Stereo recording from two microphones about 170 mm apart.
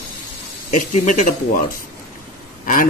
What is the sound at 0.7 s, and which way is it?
Speech, 45° left (ahead or behind).